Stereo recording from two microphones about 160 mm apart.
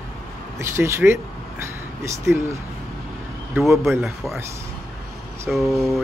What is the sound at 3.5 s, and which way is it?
Speech, 15° right (ahead or behind).